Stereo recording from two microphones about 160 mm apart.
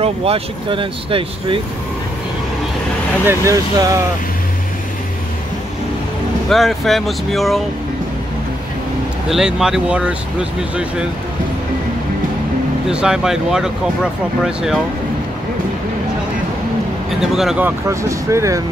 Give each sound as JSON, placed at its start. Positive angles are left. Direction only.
{"t": 0.0, "sound": "speech", "side_deg": -35}
{"t": 3.3, "sound": "speech", "side_deg": -20}
{"t": 6.5, "sound": "speech", "side_deg": 0}
{"t": 9.3, "sound": "speech", "side_deg": -5}
{"t": 12.9, "sound": "speech", "side_deg": -5}
{"t": 17.2, "sound": "speech", "side_deg": -5}